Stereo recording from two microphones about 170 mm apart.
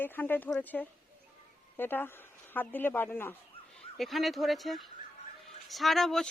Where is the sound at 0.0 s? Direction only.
10° left (ahead or behind).